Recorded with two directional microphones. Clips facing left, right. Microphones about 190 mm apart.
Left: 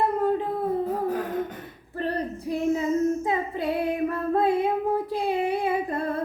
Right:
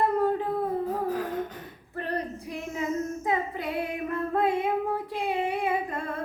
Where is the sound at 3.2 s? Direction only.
30° left (ahead or behind).